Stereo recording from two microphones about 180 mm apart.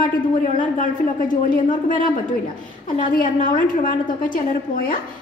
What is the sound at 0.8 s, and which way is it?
A woman's voice, 50° left (ahead or behind).